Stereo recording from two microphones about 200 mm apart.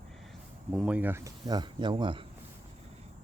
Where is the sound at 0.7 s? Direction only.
5° right (ahead or behind); by 2.2 s 25° right (ahead or behind).